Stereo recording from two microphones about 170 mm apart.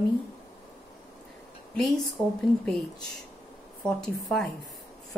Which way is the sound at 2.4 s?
Centre (ahead or behind).